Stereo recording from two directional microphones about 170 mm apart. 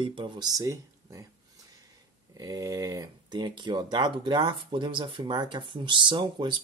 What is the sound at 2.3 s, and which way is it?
Speech, 20° right (ahead or behind).